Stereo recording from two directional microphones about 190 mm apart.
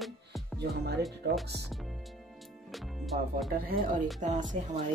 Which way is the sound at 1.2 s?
55° right (ahead or behind).